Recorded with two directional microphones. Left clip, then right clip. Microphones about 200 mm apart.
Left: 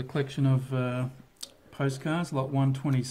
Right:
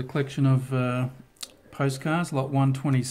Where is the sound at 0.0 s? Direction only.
10° right (ahead or behind).